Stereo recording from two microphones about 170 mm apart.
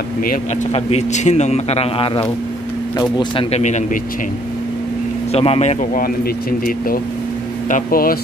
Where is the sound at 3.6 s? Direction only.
45° left (ahead or behind).